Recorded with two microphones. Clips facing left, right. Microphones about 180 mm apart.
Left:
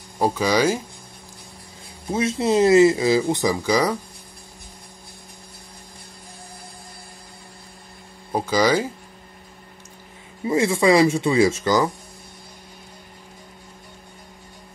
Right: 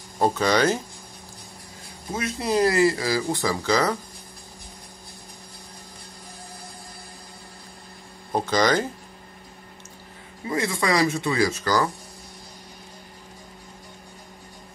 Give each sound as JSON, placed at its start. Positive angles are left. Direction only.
{"t": 0.2, "sound": "speech", "side_deg": 10}
{"t": 2.1, "sound": "speech", "side_deg": 25}
{"t": 8.3, "sound": "speech", "side_deg": 5}
{"t": 10.4, "sound": "speech", "side_deg": 25}